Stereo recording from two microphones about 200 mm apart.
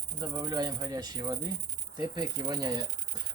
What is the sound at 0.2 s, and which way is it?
Speech, 20° right (ahead or behind).